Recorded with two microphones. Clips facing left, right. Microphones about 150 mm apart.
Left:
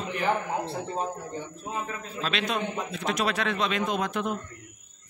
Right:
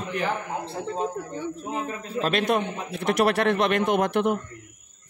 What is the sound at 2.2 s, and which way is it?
A man's voice, 55° right (ahead or behind).